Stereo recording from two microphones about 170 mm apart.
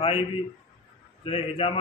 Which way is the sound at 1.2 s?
35° left (ahead or behind).